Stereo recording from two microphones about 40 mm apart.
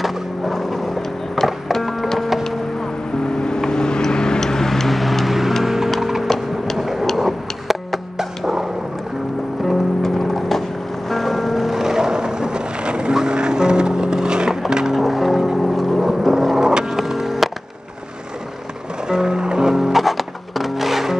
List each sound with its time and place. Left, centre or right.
0.0 s skateboard: centre
1.4 s music: centre
2.4 s music: centre
6.2 s a sound: centre
6.8 s a sound: centre
9.7 s music: centre
15.0 s music: centre
16.5 s vehicle: centre
16.9 s music: centre
19.0 s music: centre